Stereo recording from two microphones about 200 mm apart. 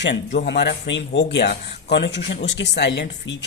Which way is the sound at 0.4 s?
55° left (ahead or behind).